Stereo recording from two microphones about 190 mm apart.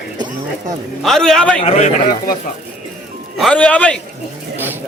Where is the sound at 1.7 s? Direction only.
35° left (ahead or behind).